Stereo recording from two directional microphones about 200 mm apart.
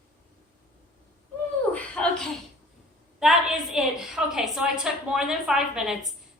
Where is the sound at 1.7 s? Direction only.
5° left (ahead or behind).